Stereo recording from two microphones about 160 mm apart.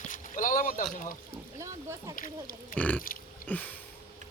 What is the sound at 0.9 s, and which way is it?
Speech, 55° left (ahead or behind).